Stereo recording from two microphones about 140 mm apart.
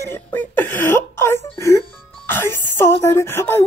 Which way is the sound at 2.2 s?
15° left (ahead or behind).